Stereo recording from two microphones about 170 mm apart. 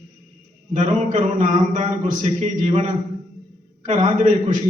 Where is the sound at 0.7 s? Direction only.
45° right (ahead or behind).